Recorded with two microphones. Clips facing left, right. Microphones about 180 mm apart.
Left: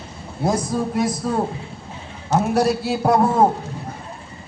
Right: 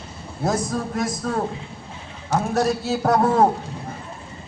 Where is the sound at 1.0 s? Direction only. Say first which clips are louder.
Left 3 dB; 15° left (ahead or behind).